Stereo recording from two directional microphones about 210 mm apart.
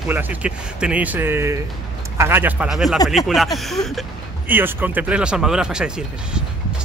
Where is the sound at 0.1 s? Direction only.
10° right (ahead or behind).